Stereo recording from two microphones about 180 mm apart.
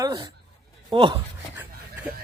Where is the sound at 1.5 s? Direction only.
10° right (ahead or behind).